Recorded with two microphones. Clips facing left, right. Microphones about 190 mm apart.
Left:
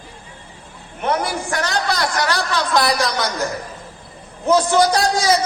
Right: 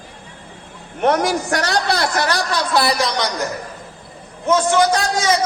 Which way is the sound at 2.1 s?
15° right (ahead or behind).